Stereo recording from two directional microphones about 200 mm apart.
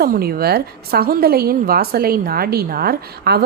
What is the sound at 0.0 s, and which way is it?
A woman's voice, 50° right (ahead or behind).